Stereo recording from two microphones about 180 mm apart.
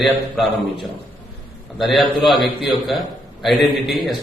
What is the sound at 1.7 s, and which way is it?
Speech, centre (ahead or behind).